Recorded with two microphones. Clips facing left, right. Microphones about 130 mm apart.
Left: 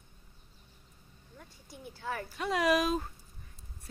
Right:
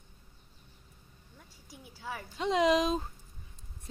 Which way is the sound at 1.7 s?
5° right (ahead or behind).